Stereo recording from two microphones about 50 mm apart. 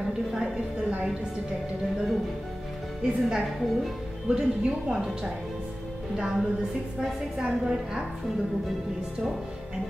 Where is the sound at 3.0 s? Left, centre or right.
Centre.